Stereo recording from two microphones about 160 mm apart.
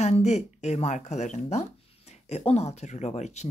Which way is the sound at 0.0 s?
45° left (ahead or behind).